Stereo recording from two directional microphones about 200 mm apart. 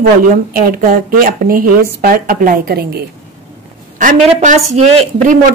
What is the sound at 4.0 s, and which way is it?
Speech, 40° right (ahead or behind).